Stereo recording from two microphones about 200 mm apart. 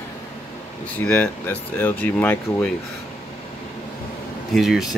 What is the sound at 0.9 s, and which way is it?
Speech, 5° left (ahead or behind).